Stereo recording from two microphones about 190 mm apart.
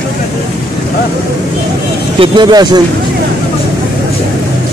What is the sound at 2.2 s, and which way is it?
Speech, 25° right (ahead or behind).